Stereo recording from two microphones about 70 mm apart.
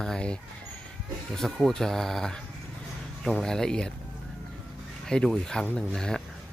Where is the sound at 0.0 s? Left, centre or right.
Centre.